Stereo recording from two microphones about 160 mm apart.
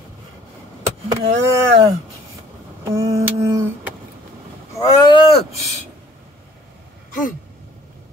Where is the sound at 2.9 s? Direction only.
20° right (ahead or behind).